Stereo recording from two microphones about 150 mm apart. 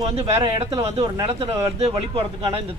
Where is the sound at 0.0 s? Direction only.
40° right (ahead or behind).